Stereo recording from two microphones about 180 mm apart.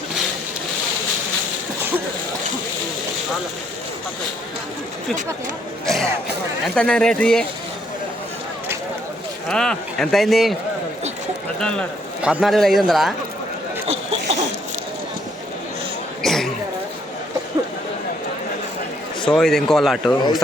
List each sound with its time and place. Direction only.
5.8 s speech: centre (ahead or behind)
9.5 s speech: 5° left (ahead or behind)
11.6 s speech: 5° left (ahead or behind)
13.8 s a sound: 35° right (ahead or behind)
16.2 s a sound: centre (ahead or behind)
19.2 s speech: 5° left (ahead or behind)